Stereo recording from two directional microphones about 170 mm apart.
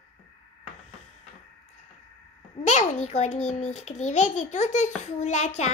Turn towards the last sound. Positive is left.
turn(degrees=40)  # may be behind; listen again after turning